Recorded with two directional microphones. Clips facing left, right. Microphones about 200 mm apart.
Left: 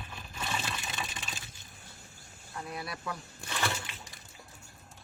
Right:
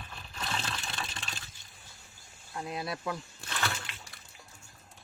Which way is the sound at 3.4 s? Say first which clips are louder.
Left 6 dB; 15° left (ahead or behind).